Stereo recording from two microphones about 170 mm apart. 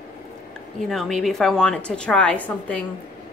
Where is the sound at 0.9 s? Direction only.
Centre (ahead or behind).